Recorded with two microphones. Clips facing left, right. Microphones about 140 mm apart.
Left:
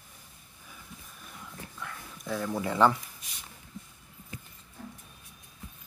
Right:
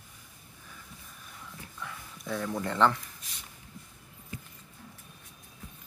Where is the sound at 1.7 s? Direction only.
Centre (ahead or behind).